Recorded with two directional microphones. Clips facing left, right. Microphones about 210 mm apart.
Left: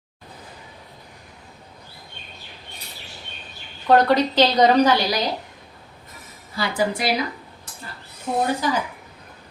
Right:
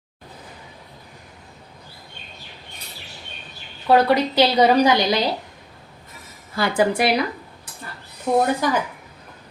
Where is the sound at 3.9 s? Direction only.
10° right (ahead or behind).